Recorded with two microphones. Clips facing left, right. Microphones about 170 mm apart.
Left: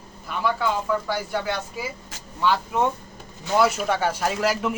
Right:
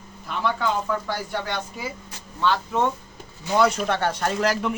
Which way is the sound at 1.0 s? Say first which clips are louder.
Left 2 dB; 5° left (ahead or behind).